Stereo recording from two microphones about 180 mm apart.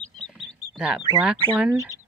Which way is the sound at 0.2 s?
5° right (ahead or behind).